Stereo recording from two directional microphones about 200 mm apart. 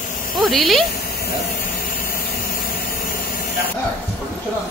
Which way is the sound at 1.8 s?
45° left (ahead or behind).